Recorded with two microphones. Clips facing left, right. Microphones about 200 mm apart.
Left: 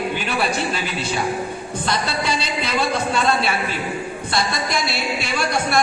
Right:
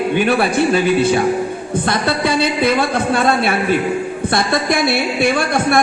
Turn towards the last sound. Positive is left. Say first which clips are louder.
# right 5 dB
turn(degrees=-55)  # may be behind; listen again after turning